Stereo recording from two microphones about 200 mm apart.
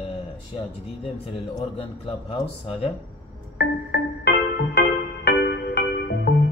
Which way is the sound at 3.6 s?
55° left (ahead or behind).